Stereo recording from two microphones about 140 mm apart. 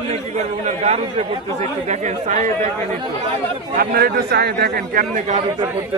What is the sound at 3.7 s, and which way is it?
A man's voice, 90° right.